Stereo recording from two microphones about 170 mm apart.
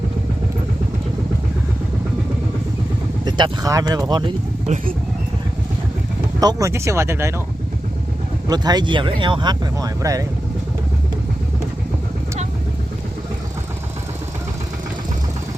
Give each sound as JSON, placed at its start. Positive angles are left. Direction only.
{"t": 3.2, "sound": "speech", "side_deg": -25}
{"t": 4.6, "sound": "speech", "side_deg": -45}
{"t": 6.4, "sound": "speech", "side_deg": -20}
{"t": 8.4, "sound": "speech", "side_deg": -25}